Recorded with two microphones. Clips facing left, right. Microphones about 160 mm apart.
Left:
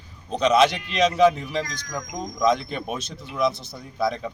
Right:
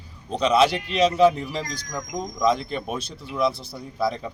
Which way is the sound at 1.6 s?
35° right (ahead or behind).